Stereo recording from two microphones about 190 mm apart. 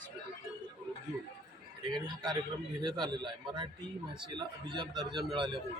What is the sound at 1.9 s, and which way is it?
A man's voice, 20° right (ahead or behind).